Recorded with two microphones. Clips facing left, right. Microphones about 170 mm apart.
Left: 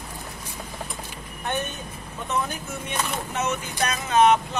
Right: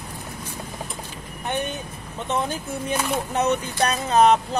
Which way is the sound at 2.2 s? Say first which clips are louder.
Right 2 dB; 30° right (ahead or behind).